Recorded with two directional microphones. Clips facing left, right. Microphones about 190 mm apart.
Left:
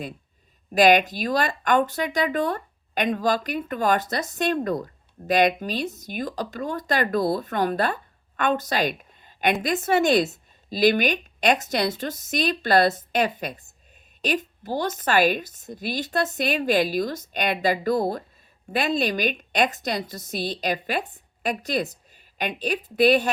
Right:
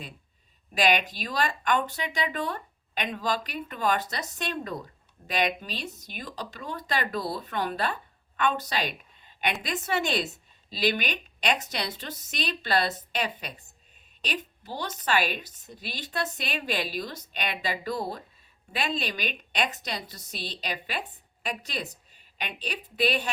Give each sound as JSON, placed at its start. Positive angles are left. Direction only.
{"t": 0.7, "sound": "a woman's voice", "side_deg": 45}